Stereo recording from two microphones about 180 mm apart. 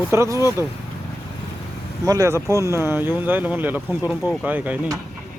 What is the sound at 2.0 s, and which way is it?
Speech, 15° right (ahead or behind).